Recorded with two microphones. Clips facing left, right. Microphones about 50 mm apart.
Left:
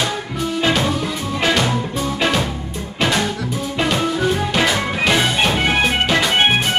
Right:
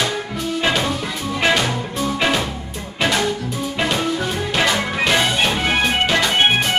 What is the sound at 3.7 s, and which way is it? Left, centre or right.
Music, centre.